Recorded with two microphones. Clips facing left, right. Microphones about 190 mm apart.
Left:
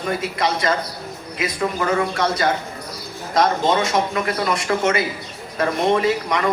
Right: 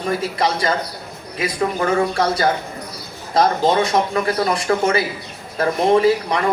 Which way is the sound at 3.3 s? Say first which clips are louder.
Right 2 dB; 30° right (ahead or behind).